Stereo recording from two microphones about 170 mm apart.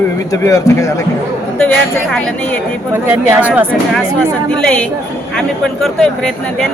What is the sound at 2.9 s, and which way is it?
Speech, 15° right (ahead or behind).